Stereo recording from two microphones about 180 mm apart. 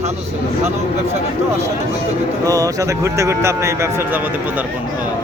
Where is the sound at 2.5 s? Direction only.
20° right (ahead or behind).